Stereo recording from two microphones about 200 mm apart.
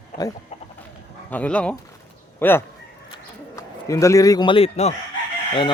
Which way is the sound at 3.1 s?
15° left (ahead or behind).